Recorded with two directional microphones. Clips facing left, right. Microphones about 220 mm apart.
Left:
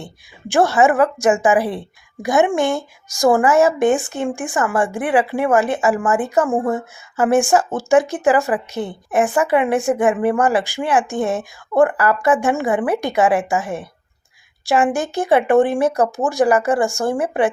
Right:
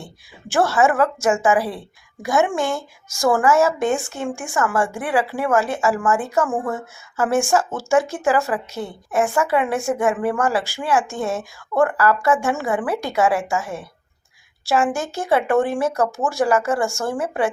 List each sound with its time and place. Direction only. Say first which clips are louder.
0.5 s a woman's voice: left 3 dB; 15° left (ahead or behind)